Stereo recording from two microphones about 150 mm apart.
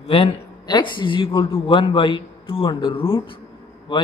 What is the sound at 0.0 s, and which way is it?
Speech, 40° left (ahead or behind).